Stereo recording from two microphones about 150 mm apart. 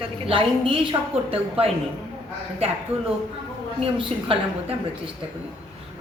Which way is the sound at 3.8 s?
40° right (ahead or behind).